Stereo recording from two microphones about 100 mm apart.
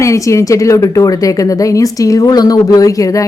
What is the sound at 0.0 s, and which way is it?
A woman's voice, 30° left (ahead or behind).